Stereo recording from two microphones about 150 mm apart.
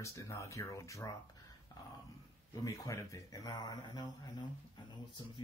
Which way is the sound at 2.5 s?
25° left (ahead or behind).